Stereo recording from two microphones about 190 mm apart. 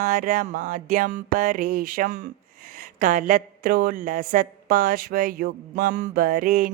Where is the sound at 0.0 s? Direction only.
45° right (ahead or behind).